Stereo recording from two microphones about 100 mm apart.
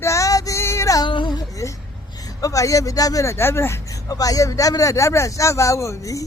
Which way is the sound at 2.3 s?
35° left (ahead or behind).